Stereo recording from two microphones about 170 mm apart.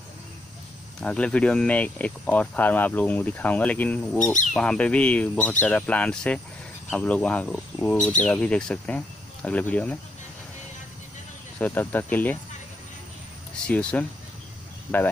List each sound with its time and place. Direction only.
1.0 s speech: 5° left (ahead or behind)
4.2 s speech: 45° left (ahead or behind)
4.6 s speech: 5° left (ahead or behind)
11.5 s speech: 10° left (ahead or behind)
13.7 s speech: 5° left (ahead or behind)